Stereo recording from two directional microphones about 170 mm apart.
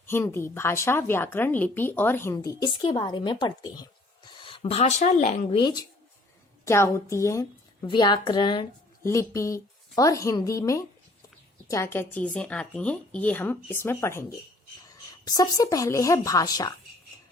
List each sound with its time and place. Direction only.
0.0 s a woman's voice: 15° left (ahead or behind); by 5.5 s 45° left (ahead or behind)
5.5 s a woman's voice: 25° left (ahead or behind)
6.7 s a woman's voice: 15° left (ahead or behind)
9.0 s a woman's voice: 15° left (ahead or behind)